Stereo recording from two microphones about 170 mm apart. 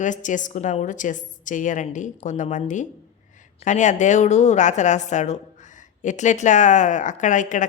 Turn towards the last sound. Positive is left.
turn(degrees=45)  # may be behind; listen again after turning